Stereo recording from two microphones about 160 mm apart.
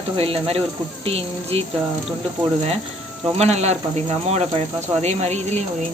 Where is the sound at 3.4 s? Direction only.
45° right (ahead or behind).